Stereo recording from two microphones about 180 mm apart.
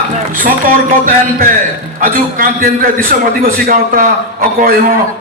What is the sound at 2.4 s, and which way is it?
A man's voice, 50° right (ahead or behind).